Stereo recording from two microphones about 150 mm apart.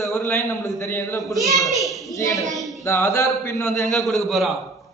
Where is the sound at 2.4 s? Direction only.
Centre (ahead or behind).